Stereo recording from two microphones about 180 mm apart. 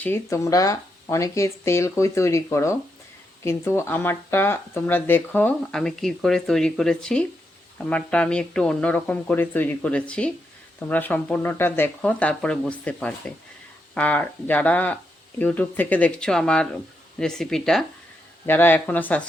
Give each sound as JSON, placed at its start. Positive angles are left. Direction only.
{"t": 0.0, "sound": "speech", "side_deg": 15}